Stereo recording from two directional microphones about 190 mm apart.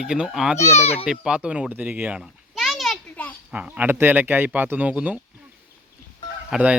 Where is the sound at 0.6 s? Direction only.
35° left (ahead or behind).